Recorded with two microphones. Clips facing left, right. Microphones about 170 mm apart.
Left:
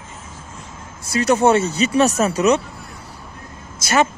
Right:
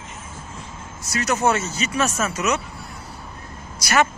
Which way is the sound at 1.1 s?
30° left (ahead or behind).